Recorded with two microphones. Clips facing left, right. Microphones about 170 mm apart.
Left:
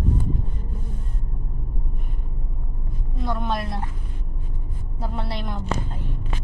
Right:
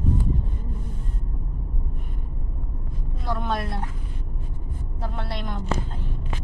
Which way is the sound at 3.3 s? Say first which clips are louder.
Left 1 dB; centre (ahead or behind).